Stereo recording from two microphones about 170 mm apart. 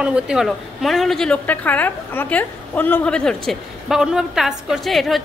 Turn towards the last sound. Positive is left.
turn(degrees=0)  # may be behind; listen again after turning